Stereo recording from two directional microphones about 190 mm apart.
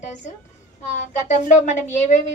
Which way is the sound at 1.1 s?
40° left (ahead or behind).